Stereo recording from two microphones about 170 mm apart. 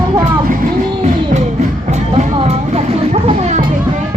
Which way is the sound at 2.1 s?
40° right (ahead or behind).